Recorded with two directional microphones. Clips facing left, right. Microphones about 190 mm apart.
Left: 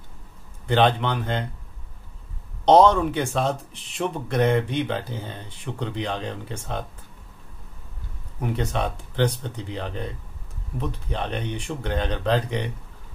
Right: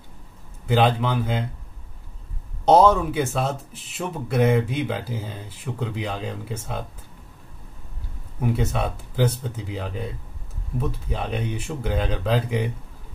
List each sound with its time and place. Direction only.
0.7 s speech: 5° right (ahead or behind)
2.6 s speech: 5° right (ahead or behind)
8.4 s speech: 5° right (ahead or behind)